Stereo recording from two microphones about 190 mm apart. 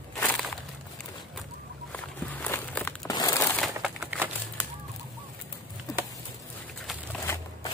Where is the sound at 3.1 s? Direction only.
20° left (ahead or behind).